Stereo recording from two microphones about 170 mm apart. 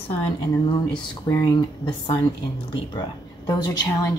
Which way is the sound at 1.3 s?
25° left (ahead or behind).